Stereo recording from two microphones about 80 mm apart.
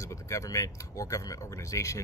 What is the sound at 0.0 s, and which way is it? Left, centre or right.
Speech, left.